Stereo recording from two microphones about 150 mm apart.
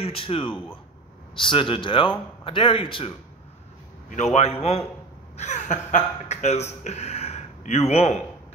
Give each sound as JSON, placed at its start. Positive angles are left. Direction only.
{"t": 0.0, "sound": "a man's voice", "side_deg": 40}
{"t": 4.1, "sound": "a man's voice", "side_deg": 50}